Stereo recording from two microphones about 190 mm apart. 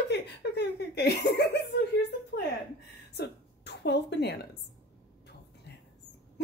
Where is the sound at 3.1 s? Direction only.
60° left (ahead or behind).